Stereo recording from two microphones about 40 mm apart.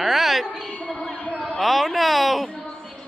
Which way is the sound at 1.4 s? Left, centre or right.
Centre.